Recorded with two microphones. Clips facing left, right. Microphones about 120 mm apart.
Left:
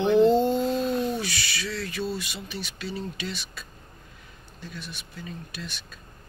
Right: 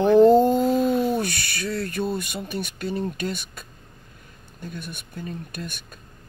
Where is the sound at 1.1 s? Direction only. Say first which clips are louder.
Right 5 dB; 50° right (ahead or behind).